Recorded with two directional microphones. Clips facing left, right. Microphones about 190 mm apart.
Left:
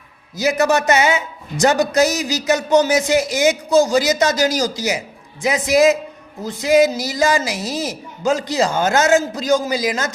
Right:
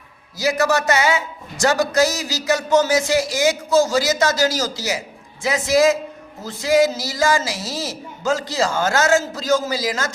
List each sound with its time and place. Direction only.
0.3 s a man's voice: 20° left (ahead or behind)